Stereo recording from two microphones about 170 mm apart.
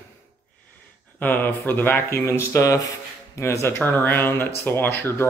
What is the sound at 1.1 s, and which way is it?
Speech, 10° left (ahead or behind).